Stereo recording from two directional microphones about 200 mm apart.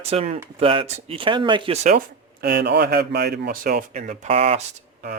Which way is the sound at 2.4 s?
55° right (ahead or behind).